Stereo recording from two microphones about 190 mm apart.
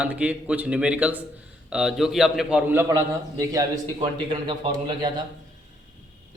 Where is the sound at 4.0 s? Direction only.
25° right (ahead or behind).